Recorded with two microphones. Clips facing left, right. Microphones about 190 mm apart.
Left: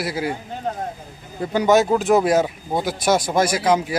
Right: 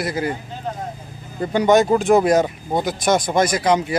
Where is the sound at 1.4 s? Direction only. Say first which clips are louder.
Right 1 dB; 5° left (ahead or behind).